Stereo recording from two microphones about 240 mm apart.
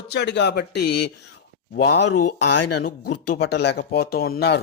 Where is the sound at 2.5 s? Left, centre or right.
Left.